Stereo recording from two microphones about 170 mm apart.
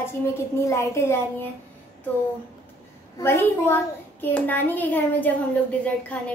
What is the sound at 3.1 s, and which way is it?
A woman's voice, 15° left (ahead or behind).